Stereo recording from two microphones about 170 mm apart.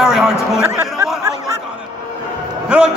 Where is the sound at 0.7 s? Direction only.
15° right (ahead or behind).